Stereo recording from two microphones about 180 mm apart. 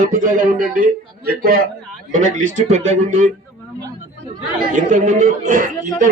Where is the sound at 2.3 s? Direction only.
45° right (ahead or behind).